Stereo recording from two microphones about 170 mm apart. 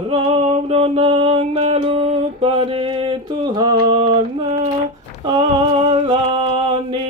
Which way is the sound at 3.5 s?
25° right (ahead or behind).